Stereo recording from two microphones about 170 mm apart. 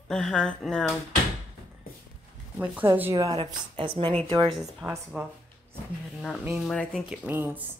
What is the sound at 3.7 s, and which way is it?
Speech, 30° right (ahead or behind).